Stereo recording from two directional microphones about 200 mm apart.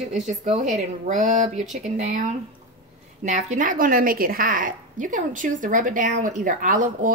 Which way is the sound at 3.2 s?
35° right (ahead or behind).